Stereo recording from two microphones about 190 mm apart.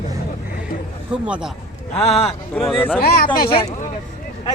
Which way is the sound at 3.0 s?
50° left (ahead or behind).